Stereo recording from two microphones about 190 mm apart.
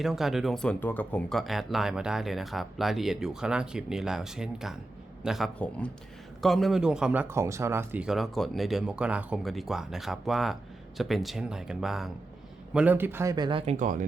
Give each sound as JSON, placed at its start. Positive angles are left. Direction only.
{"t": 0.0, "sound": "speech", "side_deg": 0}